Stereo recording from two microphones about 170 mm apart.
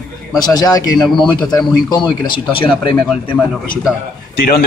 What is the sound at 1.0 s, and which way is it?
Speech, 5° left (ahead or behind).